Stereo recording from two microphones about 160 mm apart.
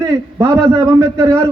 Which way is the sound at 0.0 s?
15° right (ahead or behind).